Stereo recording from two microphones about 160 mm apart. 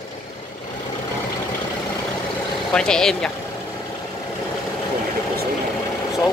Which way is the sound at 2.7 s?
5° left (ahead or behind).